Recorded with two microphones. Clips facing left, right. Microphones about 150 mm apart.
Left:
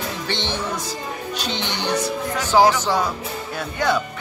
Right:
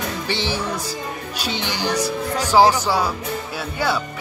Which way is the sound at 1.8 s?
35° right (ahead or behind).